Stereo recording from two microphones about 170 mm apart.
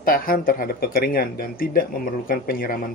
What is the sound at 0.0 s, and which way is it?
Speech, 60° left (ahead or behind).